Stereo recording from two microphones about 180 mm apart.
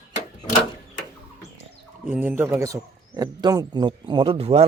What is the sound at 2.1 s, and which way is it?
Speech, 10° right (ahead or behind).